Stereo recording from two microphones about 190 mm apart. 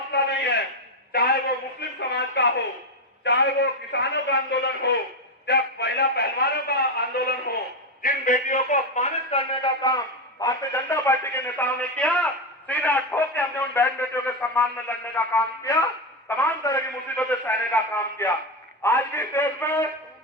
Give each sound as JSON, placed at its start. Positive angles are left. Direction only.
{"t": 0.1, "sound": "a sound", "side_deg": 65}
{"t": 3.2, "sound": "a man's voice", "side_deg": 65}
{"t": 8.0, "sound": "a man's voice", "side_deg": 45}
{"t": 10.4, "sound": "a man's voice", "side_deg": 15}